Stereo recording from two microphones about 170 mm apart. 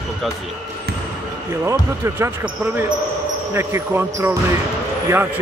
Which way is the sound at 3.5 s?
15° right (ahead or behind).